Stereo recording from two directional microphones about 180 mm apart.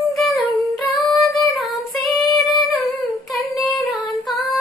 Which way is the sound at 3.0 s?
Centre (ahead or behind).